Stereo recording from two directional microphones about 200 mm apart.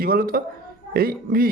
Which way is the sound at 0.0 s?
45° right (ahead or behind).